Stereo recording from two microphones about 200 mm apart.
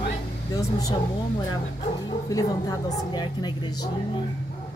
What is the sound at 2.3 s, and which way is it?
A woman's voice, 15° left (ahead or behind).